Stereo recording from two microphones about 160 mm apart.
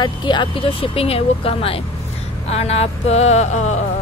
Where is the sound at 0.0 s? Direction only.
30° left (ahead or behind).